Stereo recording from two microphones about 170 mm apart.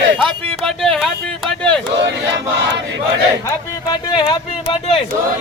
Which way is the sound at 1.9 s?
90° right.